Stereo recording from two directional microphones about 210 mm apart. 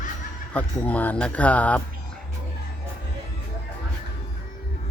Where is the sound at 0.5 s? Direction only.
5° left (ahead or behind).